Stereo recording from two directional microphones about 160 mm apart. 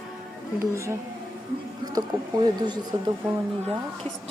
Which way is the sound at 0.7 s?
20° right (ahead or behind).